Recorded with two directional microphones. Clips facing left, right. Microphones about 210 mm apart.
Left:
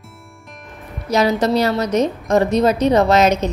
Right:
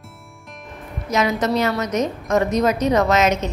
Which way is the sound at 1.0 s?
35° left (ahead or behind).